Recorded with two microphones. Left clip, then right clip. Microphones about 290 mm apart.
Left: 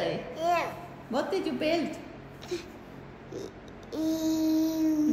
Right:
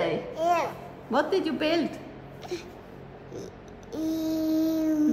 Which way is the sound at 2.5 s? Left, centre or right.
Centre.